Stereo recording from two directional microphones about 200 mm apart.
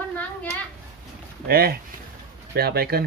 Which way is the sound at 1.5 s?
50° right (ahead or behind).